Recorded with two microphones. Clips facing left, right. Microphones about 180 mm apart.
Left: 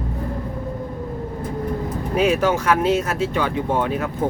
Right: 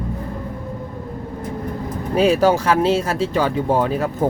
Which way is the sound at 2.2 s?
35° right (ahead or behind).